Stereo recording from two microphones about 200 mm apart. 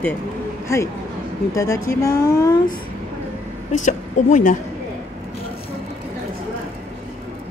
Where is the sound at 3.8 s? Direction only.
40° left (ahead or behind).